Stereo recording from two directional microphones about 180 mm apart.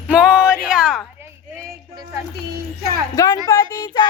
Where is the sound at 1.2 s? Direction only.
15° right (ahead or behind).